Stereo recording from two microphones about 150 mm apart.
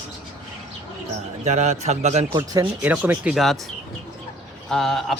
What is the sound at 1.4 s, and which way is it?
Speech, 50° right (ahead or behind).